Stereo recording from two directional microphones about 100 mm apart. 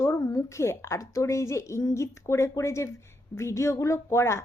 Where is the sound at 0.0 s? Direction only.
30° left (ahead or behind).